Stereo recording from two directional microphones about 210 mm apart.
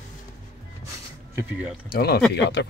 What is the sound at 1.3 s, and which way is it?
Speech, 5° right (ahead or behind).